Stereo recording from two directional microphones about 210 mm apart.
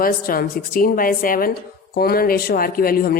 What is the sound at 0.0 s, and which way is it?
A woman's voice, 45° left (ahead or behind).